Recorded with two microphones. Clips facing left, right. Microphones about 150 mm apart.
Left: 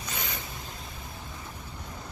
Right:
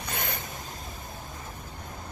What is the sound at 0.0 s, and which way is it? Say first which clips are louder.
Vehicle: right 3 dB; 55° right (ahead or behind).